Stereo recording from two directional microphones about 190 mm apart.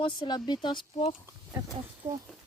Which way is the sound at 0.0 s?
25° left (ahead or behind).